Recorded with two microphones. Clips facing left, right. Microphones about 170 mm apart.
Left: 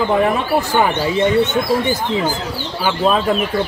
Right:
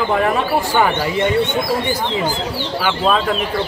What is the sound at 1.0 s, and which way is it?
Speech, 20° left (ahead or behind).